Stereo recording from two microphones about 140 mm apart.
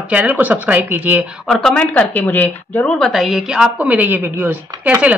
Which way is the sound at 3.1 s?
Centre (ahead or behind).